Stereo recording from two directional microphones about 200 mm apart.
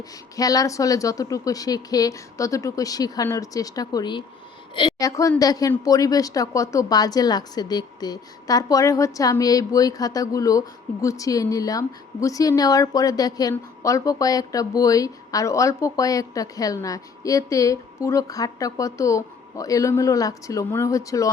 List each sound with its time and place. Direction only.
0.3 s a woman's voice: 15° left (ahead or behind)